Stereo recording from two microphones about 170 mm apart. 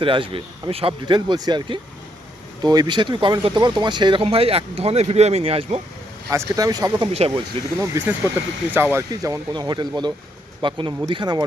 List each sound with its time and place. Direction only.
0.0 s speech: 30° right (ahead or behind)
6.3 s speech: 20° right (ahead or behind)
7.1 s speech: 35° right (ahead or behind)
7.8 s speech: 10° right (ahead or behind)